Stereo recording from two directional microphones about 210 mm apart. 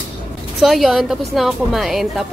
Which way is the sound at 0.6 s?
Centre (ahead or behind).